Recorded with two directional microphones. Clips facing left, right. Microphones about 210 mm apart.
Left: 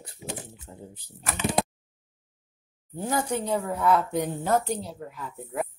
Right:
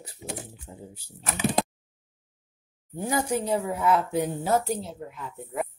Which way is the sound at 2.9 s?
10° right (ahead or behind).